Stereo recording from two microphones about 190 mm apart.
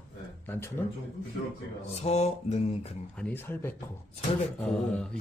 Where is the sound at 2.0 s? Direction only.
35° left (ahead or behind).